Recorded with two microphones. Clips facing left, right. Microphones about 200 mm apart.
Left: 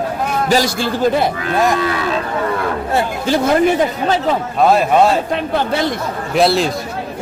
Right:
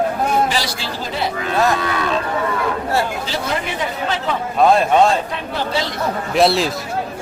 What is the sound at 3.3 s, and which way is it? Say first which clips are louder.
Speech: left 10 dB; 50° left (ahead or behind).